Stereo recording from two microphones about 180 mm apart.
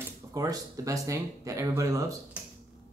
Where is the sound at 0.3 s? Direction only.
20° right (ahead or behind).